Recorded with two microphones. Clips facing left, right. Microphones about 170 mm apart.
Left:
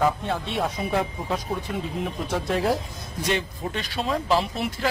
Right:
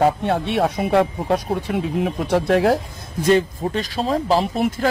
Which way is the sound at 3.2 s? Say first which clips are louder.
Right 10 dB; 45° right (ahead or behind).